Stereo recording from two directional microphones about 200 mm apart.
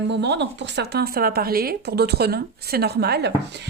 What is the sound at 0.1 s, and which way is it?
Speech, 60° right (ahead or behind).